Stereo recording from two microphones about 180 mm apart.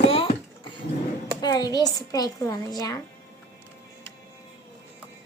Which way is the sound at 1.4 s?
20° left (ahead or behind).